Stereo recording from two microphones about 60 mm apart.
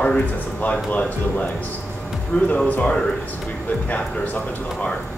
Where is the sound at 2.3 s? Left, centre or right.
Left.